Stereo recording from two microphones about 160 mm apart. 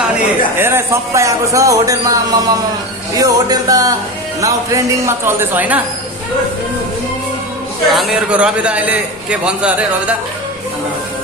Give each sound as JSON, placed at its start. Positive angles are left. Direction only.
{"t": 0.6, "sound": "a man's voice", "side_deg": -15}
{"t": 7.9, "sound": "a man's voice", "side_deg": -5}